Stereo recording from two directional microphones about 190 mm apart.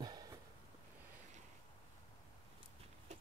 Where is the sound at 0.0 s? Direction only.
20° right (ahead or behind).